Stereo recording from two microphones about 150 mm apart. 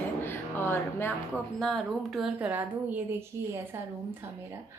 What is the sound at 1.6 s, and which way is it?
A woman's voice, centre (ahead or behind).